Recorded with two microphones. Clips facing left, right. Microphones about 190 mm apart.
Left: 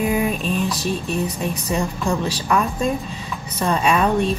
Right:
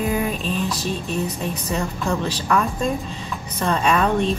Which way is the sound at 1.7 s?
10° left (ahead or behind).